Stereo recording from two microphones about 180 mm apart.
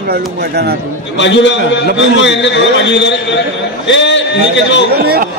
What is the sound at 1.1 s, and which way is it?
A man's voice, 85° left.